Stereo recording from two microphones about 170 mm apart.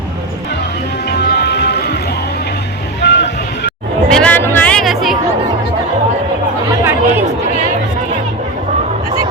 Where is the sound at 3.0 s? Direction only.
85° left.